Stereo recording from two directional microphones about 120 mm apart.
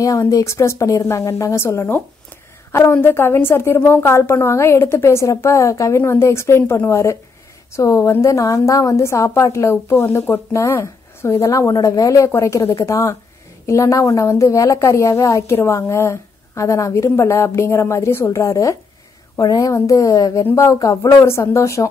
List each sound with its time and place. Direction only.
0.0 s a woman's voice: 25° left (ahead or behind)